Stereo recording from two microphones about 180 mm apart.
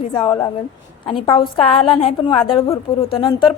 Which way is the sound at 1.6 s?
30° left (ahead or behind).